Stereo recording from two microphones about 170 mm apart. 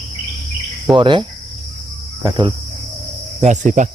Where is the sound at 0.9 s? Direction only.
30° right (ahead or behind).